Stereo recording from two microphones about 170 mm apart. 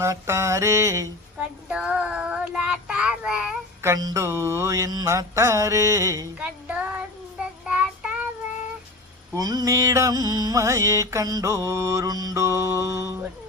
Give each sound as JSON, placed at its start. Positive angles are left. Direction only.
{"t": 0.0, "sound": "child singing", "side_deg": -15}
{"t": 9.3, "sound": "child singing", "side_deg": -20}